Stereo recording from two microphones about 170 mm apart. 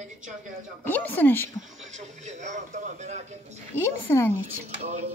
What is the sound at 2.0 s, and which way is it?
A man's voice, 45° right (ahead or behind).